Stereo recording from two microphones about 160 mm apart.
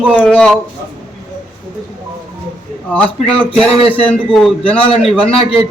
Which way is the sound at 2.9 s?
10° left (ahead or behind).